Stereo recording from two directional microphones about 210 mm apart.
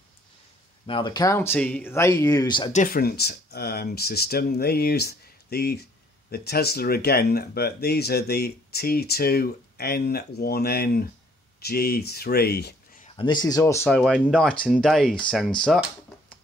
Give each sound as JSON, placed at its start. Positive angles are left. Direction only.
{"t": 0.8, "sound": "speech", "side_deg": 20}
{"t": 2.7, "sound": "speech", "side_deg": 40}
{"t": 13.0, "sound": "speech", "side_deg": 25}
{"t": 13.8, "sound": "speech", "side_deg": 0}